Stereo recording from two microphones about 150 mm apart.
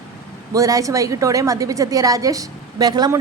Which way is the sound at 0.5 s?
20° right (ahead or behind).